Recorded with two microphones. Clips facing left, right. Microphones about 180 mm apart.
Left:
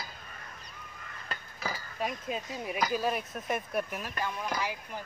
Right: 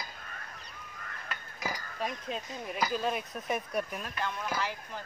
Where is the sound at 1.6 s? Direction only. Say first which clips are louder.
Even; 15° right (ahead or behind).